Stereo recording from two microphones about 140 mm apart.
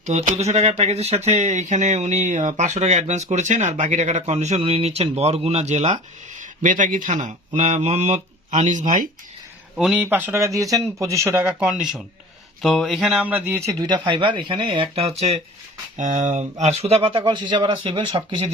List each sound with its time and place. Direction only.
0.0 s speech: 55° right (ahead or behind)
9.7 s speech: 5° right (ahead or behind)
11.6 s speech: 5° right (ahead or behind); by 15.1 s 40° right (ahead or behind)
16.0 s speech: 65° right (ahead or behind); by 18.4 s 35° right (ahead or behind)